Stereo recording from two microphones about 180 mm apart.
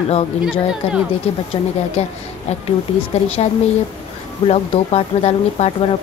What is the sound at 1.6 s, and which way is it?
Speech, 30° left (ahead or behind).